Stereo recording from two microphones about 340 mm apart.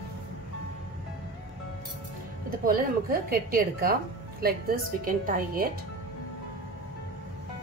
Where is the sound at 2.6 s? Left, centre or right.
Right.